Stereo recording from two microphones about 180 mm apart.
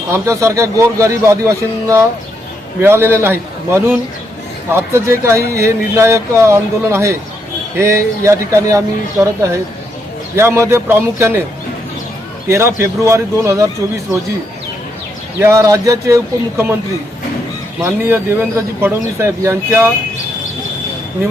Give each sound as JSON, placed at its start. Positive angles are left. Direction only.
{"t": 0.1, "sound": "speech", "side_deg": -15}
{"t": 12.5, "sound": "speech", "side_deg": -15}
{"t": 15.4, "sound": "speech", "side_deg": -15}
{"t": 17.8, "sound": "speech", "side_deg": -15}